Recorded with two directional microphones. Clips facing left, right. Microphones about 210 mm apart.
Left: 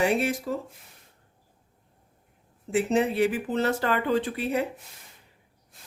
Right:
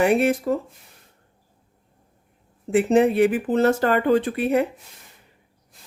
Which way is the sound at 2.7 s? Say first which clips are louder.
Right 6 dB; 55° right (ahead or behind).